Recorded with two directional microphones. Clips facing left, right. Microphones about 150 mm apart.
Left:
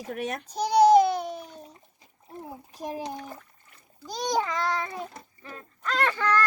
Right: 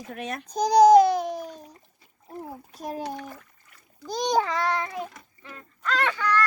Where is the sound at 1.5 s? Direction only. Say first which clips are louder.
Right 4 dB; 25° left (ahead or behind).